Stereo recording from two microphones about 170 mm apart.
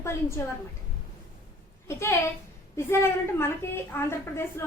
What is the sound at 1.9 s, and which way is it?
Speech, 15° left (ahead or behind).